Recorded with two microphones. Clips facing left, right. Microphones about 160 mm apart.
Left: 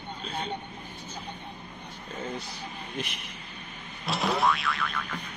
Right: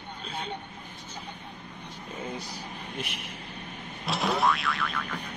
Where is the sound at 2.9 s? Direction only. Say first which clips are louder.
Left 1 dB; centre (ahead or behind).